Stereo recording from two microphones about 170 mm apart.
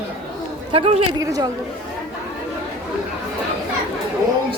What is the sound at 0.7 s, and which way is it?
Speech, 35° right (ahead or behind).